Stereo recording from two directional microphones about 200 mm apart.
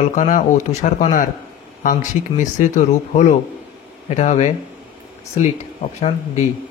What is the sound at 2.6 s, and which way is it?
Speech, 40° left (ahead or behind).